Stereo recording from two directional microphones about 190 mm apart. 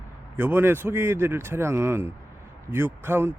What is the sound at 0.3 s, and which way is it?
Speech, 10° right (ahead or behind).